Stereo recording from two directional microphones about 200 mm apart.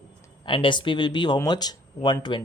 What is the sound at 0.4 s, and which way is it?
Speech, 25° left (ahead or behind).